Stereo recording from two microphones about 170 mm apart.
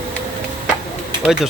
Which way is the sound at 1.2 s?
Centre (ahead or behind).